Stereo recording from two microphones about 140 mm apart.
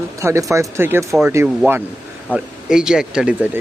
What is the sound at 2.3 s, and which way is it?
Speech, 5° right (ahead or behind).